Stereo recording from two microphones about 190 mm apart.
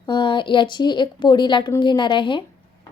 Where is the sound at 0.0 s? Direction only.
25° left (ahead or behind).